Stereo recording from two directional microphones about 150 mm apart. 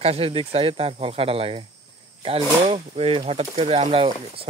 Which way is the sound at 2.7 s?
40° right (ahead or behind).